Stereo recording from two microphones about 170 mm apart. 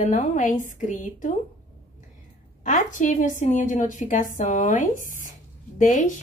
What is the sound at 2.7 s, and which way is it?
A woman's voice, 50° left (ahead or behind).